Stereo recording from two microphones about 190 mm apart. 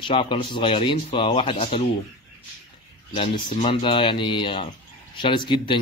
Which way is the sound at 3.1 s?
25° left (ahead or behind).